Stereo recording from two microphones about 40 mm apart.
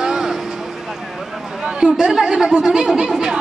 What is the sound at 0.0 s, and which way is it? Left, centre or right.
Vehicle, centre.